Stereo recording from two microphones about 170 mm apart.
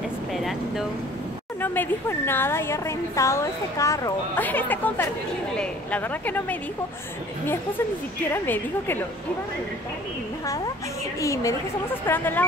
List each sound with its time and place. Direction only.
0.3 s speech: centre (ahead or behind)
1.6 s a woman's voice: 10° left (ahead or behind)
8.3 s a woman's voice: 10° left (ahead or behind)
11.1 s a woman's voice: 20° left (ahead or behind)